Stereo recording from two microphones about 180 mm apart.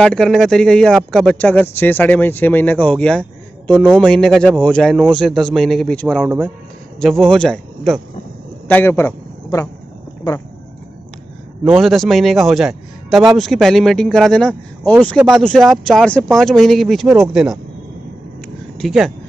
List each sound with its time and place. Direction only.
0.0 s a man's voice: 5° left (ahead or behind)
11.6 s speech: centre (ahead or behind)
18.8 s speech: centre (ahead or behind)